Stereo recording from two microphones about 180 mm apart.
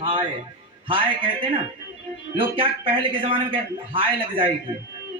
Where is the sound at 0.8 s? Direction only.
30° right (ahead or behind).